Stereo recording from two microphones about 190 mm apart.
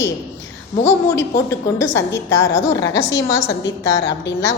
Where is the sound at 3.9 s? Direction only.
70° left (ahead or behind).